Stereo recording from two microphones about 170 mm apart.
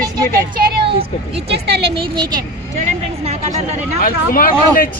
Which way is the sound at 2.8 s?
40° right (ahead or behind).